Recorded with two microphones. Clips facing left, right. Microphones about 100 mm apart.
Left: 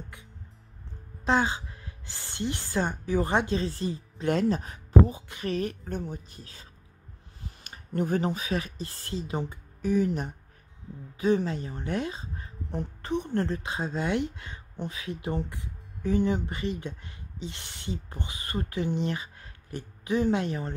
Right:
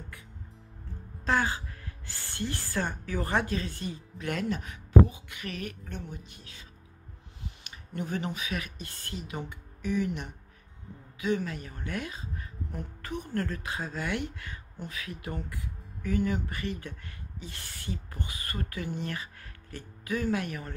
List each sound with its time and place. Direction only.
1.2 s a woman's voice: 20° left (ahead or behind)